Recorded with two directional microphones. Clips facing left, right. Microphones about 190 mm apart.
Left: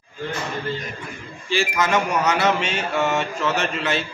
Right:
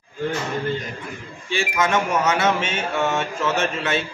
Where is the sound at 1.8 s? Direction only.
Centre (ahead or behind).